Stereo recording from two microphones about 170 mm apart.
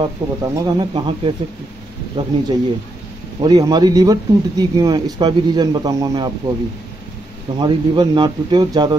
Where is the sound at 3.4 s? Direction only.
25° right (ahead or behind).